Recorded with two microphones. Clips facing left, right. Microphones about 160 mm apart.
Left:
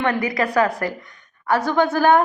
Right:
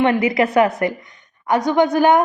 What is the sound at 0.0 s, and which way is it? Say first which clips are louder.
A woman's voice: right 5 dB; 25° right (ahead or behind).